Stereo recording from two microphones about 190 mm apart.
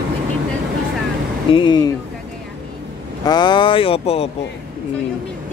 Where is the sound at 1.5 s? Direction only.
25° left (ahead or behind).